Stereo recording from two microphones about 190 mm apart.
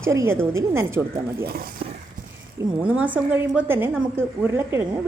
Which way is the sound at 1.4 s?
50° right (ahead or behind).